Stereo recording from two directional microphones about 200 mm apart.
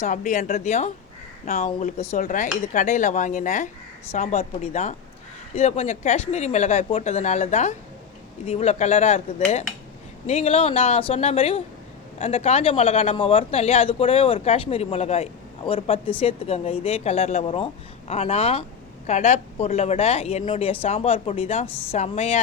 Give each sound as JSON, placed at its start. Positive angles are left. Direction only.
{"t": 0.0, "sound": "speech", "side_deg": 40}
{"t": 10.2, "sound": "speech", "side_deg": 30}